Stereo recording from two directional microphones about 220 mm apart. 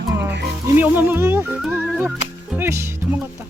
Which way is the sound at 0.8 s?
10° right (ahead or behind).